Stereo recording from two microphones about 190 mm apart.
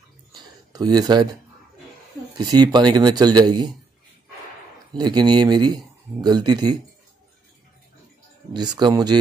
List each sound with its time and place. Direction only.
0.3 s a sound: 20° right (ahead or behind)
2.3 s speech: 20° right (ahead or behind)
4.9 s speech: 20° right (ahead or behind)
8.5 s speech: 20° right (ahead or behind)